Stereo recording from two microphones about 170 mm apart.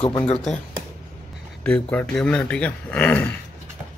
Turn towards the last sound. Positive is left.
turn(degrees=10)  # may be behind; listen again after turning